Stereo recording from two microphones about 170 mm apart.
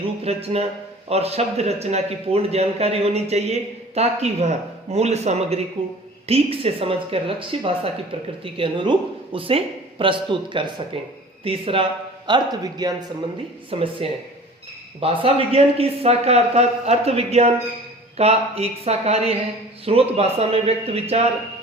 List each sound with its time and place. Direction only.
0.0 s a man's voice: 35° right (ahead or behind)